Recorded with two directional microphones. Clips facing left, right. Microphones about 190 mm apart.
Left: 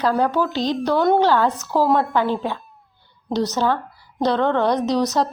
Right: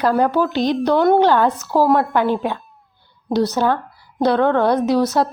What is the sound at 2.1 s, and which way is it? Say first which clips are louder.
A woman's voice: right 3 dB; 15° right (ahead or behind).